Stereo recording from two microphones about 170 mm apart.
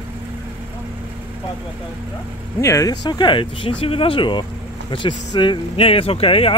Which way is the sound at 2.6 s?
20° left (ahead or behind).